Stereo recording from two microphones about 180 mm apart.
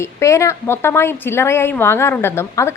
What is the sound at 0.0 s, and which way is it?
A woman's voice, 15° left (ahead or behind).